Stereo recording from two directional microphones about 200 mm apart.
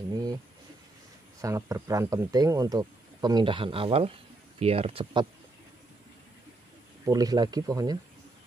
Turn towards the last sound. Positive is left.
turn(degrees=-20)  # may be behind; listen again after turning